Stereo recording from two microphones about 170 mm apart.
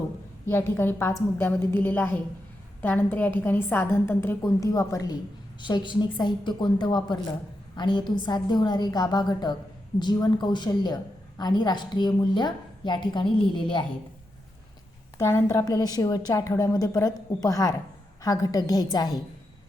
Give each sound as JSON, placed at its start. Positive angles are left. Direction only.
{"t": 0.4, "sound": "a woman's voice", "side_deg": 15}
{"t": 15.2, "sound": "a woman's voice", "side_deg": 15}